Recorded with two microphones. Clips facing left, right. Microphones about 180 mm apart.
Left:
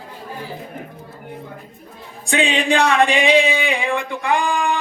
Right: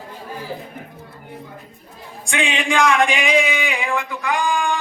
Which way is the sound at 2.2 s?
35° left (ahead or behind).